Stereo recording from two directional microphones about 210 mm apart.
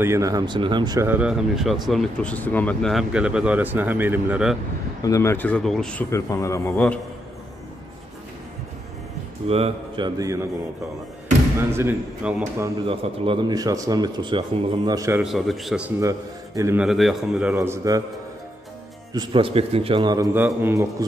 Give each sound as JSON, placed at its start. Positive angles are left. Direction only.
{"t": 0.0, "sound": "speech", "side_deg": -15}
{"t": 5.0, "sound": "speech", "side_deg": 15}
{"t": 9.5, "sound": "a man's voice", "side_deg": -25}
{"t": 11.7, "sound": "speech", "side_deg": -10}
{"t": 12.8, "sound": "a man's voice", "side_deg": -25}
{"t": 15.2, "sound": "speech", "side_deg": 0}
{"t": 16.0, "sound": "a man's voice", "side_deg": -15}
{"t": 16.8, "sound": "speech", "side_deg": 0}
{"t": 17.6, "sound": "speech", "side_deg": -15}
{"t": 19.1, "sound": "a man's voice", "side_deg": -25}